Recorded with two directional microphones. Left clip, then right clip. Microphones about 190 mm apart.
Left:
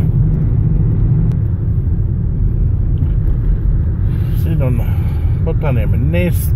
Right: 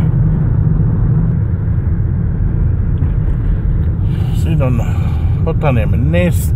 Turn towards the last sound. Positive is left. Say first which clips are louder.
# right 3 dB
turn(degrees=-20)  # may be behind; listen again after turning